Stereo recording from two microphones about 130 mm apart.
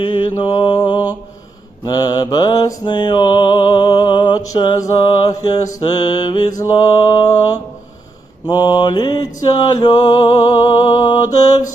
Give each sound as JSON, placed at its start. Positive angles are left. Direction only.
{"t": 0.0, "sound": "mantra", "side_deg": 35}